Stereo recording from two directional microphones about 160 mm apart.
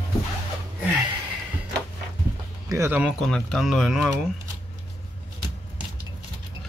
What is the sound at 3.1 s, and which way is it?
Speech, 5° left (ahead or behind).